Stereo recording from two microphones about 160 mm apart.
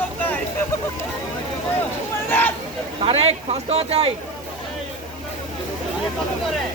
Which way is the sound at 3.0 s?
40° right (ahead or behind).